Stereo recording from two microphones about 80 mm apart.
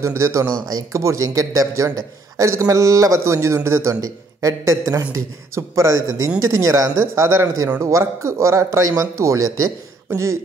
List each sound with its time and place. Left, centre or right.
0.0 s a man's voice: right